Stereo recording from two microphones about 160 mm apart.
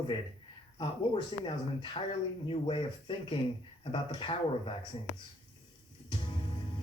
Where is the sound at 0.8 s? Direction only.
30° left (ahead or behind).